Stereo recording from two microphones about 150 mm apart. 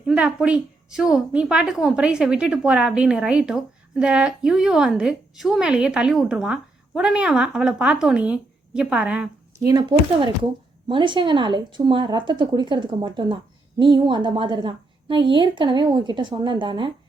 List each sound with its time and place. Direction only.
0.1 s a woman's voice: 5° right (ahead or behind)
9.6 s a woman's voice: 30° right (ahead or behind)